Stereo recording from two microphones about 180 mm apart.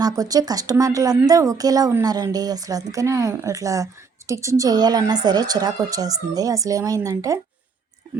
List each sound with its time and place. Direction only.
0.0 s a woman's voice: 20° right (ahead or behind)